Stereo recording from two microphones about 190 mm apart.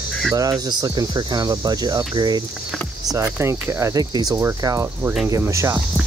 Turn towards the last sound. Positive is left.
turn(degrees=-15)  # may be behind; listen again after turning